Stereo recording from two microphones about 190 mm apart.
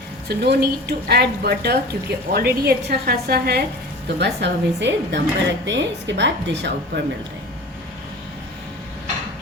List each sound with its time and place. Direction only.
0.3 s a woman's voice: 60° right (ahead or behind)
4.2 s speech: 65° right (ahead or behind)